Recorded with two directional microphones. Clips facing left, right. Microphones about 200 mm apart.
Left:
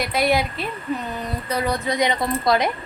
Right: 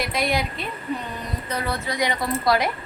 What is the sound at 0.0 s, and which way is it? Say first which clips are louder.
Speech: left 4 dB; 5° left (ahead or behind).